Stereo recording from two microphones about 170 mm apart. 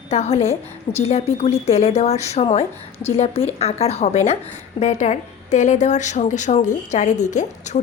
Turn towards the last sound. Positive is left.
turn(degrees=45)  # may be behind; listen again after turning